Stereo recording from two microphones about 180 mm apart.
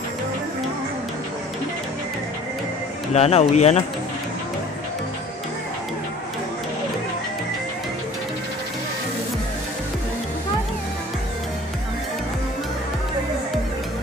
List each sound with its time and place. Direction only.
3.1 s speech: 35° left (ahead or behind)